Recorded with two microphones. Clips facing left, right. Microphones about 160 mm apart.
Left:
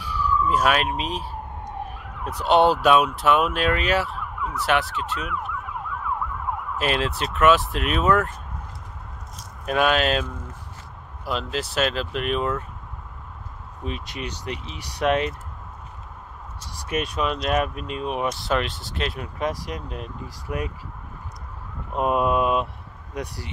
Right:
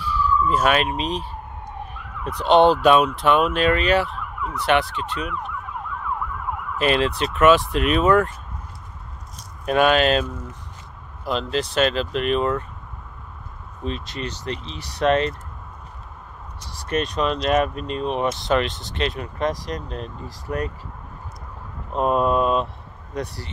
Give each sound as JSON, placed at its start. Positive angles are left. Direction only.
{"t": 0.0, "sound": "speech", "side_deg": 15}
{"t": 6.8, "sound": "speech", "side_deg": 0}
{"t": 9.7, "sound": "speech", "side_deg": 0}
{"t": 11.2, "sound": "speech", "side_deg": 5}
{"t": 13.8, "sound": "speech", "side_deg": 10}
{"t": 16.7, "sound": "speech", "side_deg": 10}
{"t": 21.9, "sound": "speech", "side_deg": 10}